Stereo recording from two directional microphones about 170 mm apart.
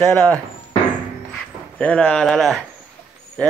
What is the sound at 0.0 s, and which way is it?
Speech, 5° left (ahead or behind).